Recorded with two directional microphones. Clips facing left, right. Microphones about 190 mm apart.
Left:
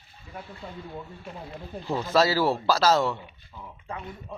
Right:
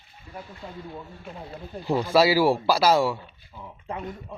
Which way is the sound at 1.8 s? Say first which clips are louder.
Right 3 dB; 15° right (ahead or behind).